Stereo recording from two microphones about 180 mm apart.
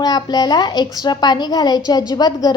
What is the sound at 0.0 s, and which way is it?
A woman's voice, 20° left (ahead or behind).